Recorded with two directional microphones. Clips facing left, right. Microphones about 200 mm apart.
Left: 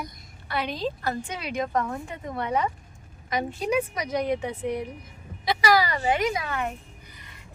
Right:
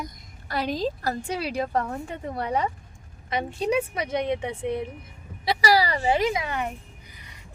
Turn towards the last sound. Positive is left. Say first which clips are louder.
# right 2 dB
turn(degrees=-20)  # may be behind; listen again after turning